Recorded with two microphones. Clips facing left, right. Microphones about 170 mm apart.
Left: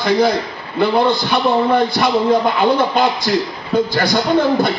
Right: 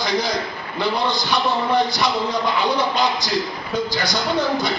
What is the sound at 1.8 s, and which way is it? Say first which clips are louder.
A man's voice: left 7 dB; 55° left (ahead or behind).